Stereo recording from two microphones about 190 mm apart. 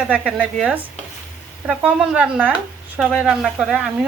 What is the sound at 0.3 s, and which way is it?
Speech, centre (ahead or behind).